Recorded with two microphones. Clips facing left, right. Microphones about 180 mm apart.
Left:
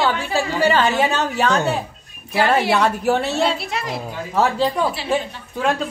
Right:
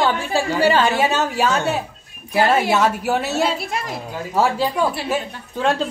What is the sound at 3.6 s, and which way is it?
Speech, 50° right (ahead or behind).